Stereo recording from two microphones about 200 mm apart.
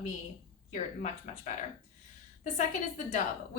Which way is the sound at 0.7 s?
35° left (ahead or behind).